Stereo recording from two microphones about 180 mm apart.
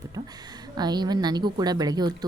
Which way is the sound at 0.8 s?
20° right (ahead or behind).